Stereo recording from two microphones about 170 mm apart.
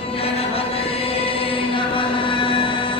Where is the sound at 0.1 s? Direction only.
35° left (ahead or behind).